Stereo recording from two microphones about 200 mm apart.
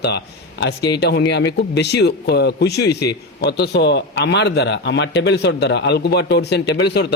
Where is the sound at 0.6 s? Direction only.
55° left (ahead or behind).